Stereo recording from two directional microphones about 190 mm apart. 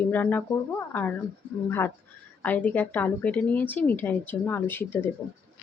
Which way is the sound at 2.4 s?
10° left (ahead or behind).